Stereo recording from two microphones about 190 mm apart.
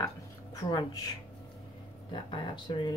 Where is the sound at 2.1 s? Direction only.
25° left (ahead or behind).